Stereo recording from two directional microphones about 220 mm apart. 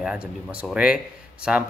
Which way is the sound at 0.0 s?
5° right (ahead or behind).